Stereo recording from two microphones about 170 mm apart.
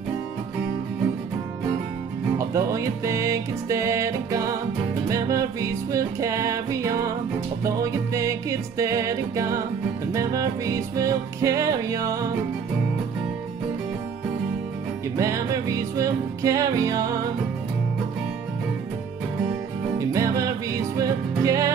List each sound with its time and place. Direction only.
2.3 s music: 20° right (ahead or behind)
15.1 s music: 20° right (ahead or behind)
20.0 s music: 20° right (ahead or behind)